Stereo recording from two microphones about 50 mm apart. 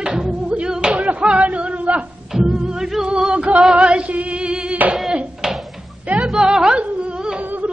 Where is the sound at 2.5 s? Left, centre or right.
Centre.